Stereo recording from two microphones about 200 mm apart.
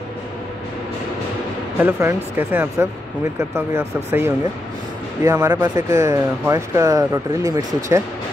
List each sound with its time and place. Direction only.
1.8 s speech: 10° right (ahead or behind)